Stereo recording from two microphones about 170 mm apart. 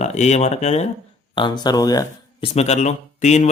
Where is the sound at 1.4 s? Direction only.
25° left (ahead or behind).